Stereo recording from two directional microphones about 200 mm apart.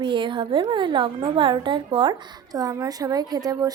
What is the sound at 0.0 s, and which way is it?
A woman's voice, 25° right (ahead or behind).